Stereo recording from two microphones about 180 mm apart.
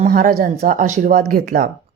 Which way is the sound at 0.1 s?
55° right (ahead or behind).